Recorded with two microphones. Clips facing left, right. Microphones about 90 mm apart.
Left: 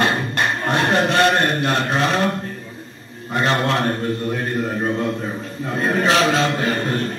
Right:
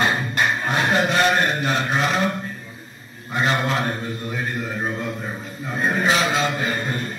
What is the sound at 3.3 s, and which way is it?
A man's voice, 65° left (ahead or behind).